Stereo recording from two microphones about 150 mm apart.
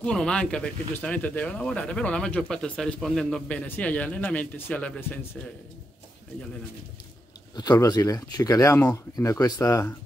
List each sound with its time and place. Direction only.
0.0 s speech: 5° left (ahead or behind)
7.5 s speech: 30° left (ahead or behind)